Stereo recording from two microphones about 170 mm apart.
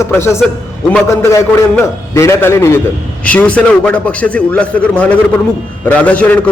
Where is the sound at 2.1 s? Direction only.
15° left (ahead or behind).